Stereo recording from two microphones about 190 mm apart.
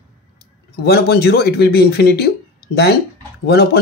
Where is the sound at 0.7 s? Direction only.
55° left (ahead or behind).